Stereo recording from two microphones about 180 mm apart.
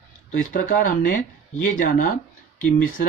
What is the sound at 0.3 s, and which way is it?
Speech, 45° left (ahead or behind).